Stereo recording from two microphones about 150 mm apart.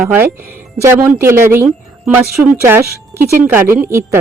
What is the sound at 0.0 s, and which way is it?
Speech, 15° right (ahead or behind).